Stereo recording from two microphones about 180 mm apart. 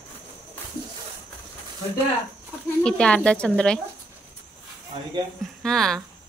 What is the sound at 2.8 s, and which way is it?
Speech, 5° left (ahead or behind).